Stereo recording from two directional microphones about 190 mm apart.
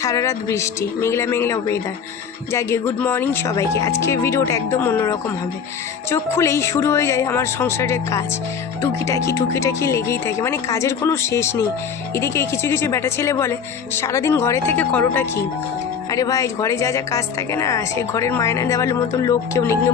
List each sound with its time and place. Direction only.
0.0 s a woman's voice: 15° left (ahead or behind)